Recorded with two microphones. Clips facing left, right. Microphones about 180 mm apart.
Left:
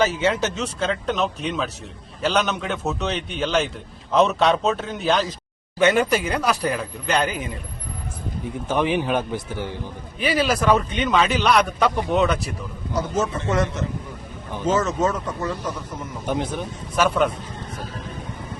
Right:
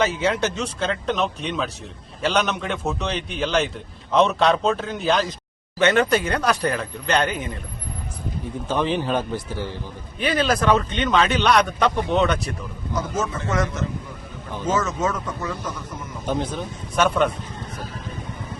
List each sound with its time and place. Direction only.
0.0 s speech: 5° left (ahead or behind)
8.7 s speech: 15° left (ahead or behind)
10.2 s speech: 5° left (ahead or behind)
13.0 s a man's voice: 20° left (ahead or behind)
14.8 s speech: 35° left (ahead or behind)
16.2 s speech: 15° left (ahead or behind)
16.9 s speech: centre (ahead or behind)